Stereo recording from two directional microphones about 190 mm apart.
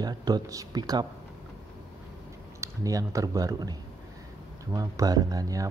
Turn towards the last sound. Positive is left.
turn(degrees=-20)  # may be behind; listen again after turning